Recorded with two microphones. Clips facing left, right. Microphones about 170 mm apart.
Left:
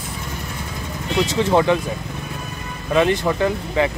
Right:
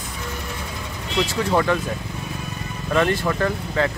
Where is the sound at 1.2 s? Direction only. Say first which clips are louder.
Left 4 dB; 20° left (ahead or behind).